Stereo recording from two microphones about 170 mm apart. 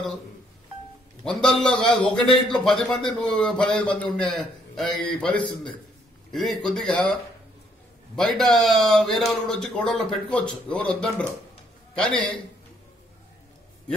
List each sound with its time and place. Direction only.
1.2 s a man's voice: 5° left (ahead or behind)
8.2 s a man's voice: centre (ahead or behind)